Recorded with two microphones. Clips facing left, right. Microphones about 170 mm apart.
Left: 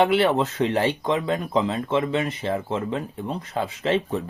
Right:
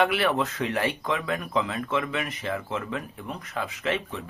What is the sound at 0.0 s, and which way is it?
Speech, 25° left (ahead or behind).